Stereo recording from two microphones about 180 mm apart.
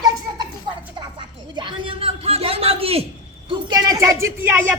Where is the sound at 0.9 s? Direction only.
25° right (ahead or behind).